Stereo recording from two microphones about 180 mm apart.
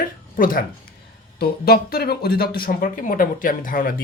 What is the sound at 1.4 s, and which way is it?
Speech, 55° left (ahead or behind).